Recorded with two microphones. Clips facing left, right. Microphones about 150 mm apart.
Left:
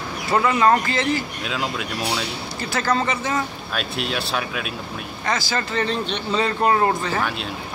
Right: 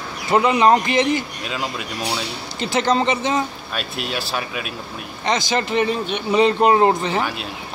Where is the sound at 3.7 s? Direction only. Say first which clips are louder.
Left 1 dB; centre (ahead or behind).